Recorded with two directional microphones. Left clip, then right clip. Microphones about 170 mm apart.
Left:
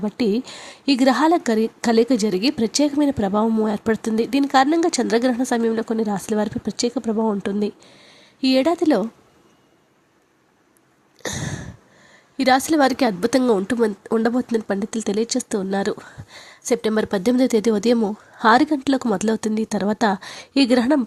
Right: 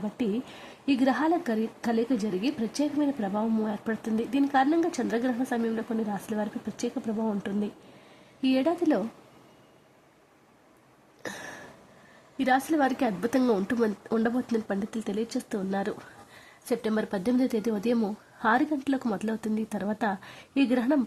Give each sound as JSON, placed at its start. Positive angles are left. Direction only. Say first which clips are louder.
{"t": 0.2, "sound": "speech", "louder": "left 10 dB", "side_deg": 35}
{"t": 11.2, "sound": "a sound", "louder": "left 9 dB", "side_deg": 30}
{"t": 12.4, "sound": "speech", "louder": "left 8 dB", "side_deg": 35}